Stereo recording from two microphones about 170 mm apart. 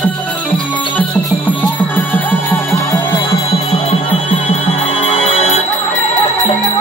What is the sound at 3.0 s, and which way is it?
Music, 30° left (ahead or behind).